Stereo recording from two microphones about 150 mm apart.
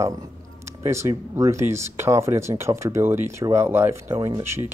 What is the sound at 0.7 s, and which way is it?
Speech, 20° right (ahead or behind).